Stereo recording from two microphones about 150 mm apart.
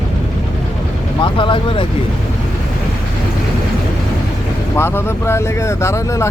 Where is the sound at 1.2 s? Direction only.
35° left (ahead or behind).